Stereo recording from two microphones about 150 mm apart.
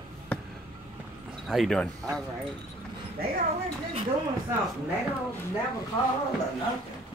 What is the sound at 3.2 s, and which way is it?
Speech, 90° right.